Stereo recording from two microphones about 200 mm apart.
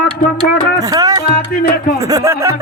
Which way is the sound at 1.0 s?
20° right (ahead or behind).